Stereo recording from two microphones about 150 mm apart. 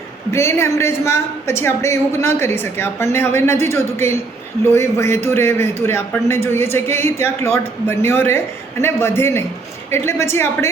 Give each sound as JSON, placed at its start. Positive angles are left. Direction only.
{"t": 0.3, "sound": "a woman's voice", "side_deg": 20}